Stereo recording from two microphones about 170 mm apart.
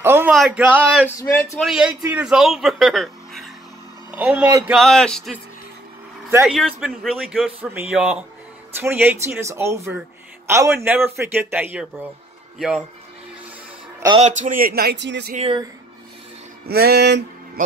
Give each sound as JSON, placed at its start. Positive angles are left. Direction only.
{"t": 0.0, "sound": "a sound", "side_deg": -15}
{"t": 0.3, "sound": "speech", "side_deg": -5}
{"t": 1.1, "sound": "a man's voice", "side_deg": 20}
{"t": 1.6, "sound": "a man's voice", "side_deg": -5}
{"t": 4.7, "sound": "a man's voice", "side_deg": 5}
{"t": 6.4, "sound": "a man's voice", "side_deg": 0}
{"t": 14.1, "sound": "speech", "side_deg": -45}
{"t": 15.3, "sound": "speech", "side_deg": -35}
{"t": 16.6, "sound": "a sound", "side_deg": -65}